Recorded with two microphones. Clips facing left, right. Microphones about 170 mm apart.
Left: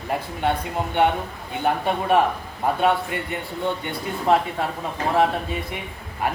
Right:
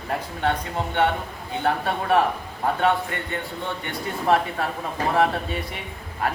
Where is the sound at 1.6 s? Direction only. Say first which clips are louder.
Left 2 dB; 15° left (ahead or behind).